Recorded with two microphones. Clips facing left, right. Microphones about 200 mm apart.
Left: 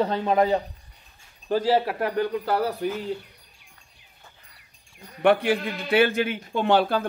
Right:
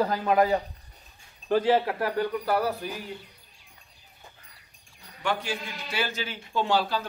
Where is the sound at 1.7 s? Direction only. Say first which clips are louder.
Left 1 dB; 20° left (ahead or behind).